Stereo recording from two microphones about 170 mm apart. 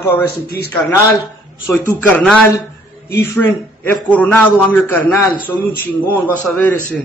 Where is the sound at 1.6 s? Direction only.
10° left (ahead or behind).